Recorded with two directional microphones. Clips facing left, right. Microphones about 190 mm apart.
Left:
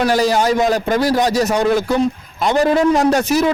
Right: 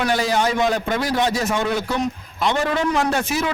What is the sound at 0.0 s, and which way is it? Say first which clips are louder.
A man's voice: left 5 dB; 40° left (ahead or behind).